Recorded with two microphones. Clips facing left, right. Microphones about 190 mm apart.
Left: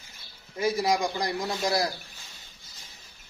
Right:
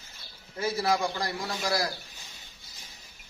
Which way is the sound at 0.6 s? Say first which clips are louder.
Left 2 dB; 15° left (ahead or behind).